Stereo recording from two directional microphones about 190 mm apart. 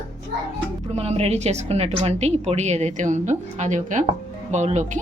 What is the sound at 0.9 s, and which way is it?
A woman's voice, 35° right (ahead or behind).